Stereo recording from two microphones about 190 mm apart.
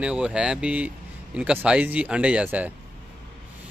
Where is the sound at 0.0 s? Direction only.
5° right (ahead or behind).